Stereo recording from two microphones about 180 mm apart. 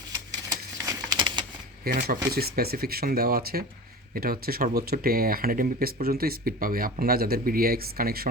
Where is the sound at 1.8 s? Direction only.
55° right (ahead or behind).